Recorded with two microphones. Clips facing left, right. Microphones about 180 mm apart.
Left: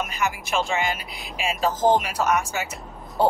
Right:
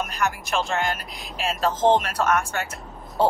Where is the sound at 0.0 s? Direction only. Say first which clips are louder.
Even; centre (ahead or behind).